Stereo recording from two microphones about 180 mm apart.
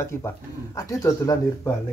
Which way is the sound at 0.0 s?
15° left (ahead or behind).